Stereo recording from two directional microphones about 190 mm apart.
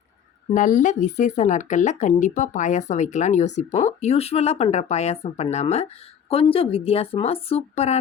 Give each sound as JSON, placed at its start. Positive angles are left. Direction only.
{"t": 0.5, "sound": "speech", "side_deg": 40}